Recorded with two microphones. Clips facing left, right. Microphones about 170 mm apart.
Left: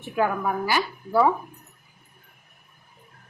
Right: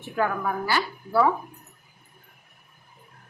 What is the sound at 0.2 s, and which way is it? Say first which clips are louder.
A woman's voice: left 2 dB; 15° left (ahead or behind).